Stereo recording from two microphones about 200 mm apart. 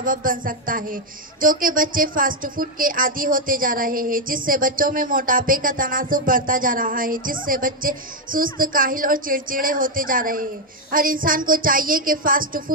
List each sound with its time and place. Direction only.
0.0 s speech: 45° right (ahead or behind)